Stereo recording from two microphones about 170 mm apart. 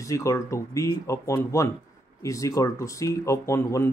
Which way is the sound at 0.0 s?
20° left (ahead or behind).